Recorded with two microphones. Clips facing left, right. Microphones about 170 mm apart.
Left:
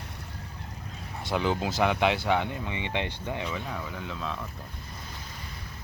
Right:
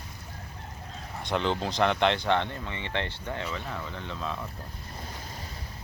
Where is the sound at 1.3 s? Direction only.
5° left (ahead or behind).